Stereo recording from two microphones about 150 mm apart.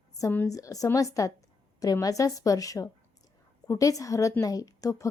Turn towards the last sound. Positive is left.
turn(degrees=20)  # may be behind; listen again after turning